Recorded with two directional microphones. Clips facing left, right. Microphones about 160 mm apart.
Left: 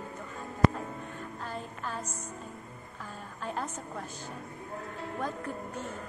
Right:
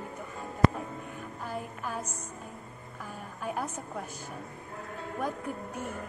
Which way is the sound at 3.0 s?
10° right (ahead or behind).